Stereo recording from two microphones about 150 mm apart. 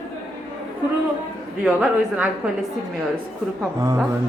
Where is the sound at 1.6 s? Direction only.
10° right (ahead or behind).